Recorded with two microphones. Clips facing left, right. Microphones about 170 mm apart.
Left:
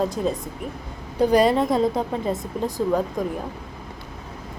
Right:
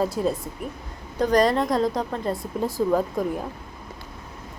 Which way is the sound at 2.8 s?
5° right (ahead or behind).